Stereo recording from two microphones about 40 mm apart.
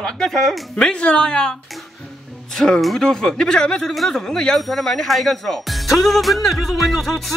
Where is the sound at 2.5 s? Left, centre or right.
Centre.